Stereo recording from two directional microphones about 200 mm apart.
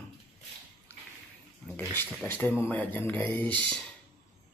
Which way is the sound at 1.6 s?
10° left (ahead or behind).